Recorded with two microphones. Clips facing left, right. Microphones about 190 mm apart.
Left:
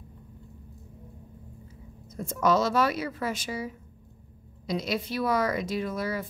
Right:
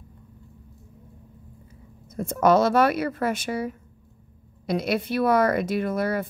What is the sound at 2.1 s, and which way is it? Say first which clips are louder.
Speech: right 5 dB; 55° right (ahead or behind).